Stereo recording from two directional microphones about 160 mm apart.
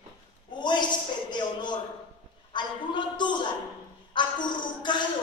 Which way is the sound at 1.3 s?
30° left (ahead or behind).